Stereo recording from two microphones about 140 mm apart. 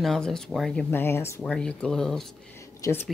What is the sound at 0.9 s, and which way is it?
Speech, 15° left (ahead or behind).